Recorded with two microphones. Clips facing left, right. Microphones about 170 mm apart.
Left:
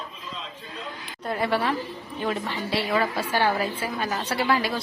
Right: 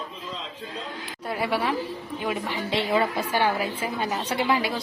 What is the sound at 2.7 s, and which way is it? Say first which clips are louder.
A woman's voice: right 1 dB; 25° right (ahead or behind).